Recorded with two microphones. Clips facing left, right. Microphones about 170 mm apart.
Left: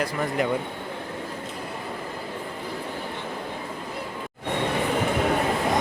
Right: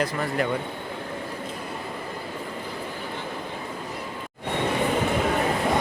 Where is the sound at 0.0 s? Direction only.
15° left (ahead or behind).